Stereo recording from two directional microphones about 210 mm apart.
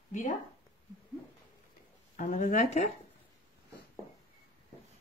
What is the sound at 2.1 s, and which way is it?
Speech, 40° left (ahead or behind).